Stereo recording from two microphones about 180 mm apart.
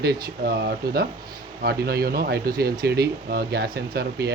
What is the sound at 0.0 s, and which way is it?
Speech, 65° right (ahead or behind).